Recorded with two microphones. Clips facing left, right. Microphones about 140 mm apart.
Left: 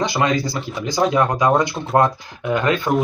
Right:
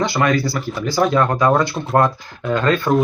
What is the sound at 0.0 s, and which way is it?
Speech, 20° left (ahead or behind).